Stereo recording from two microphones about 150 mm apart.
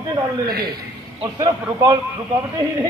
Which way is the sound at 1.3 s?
25° right (ahead or behind).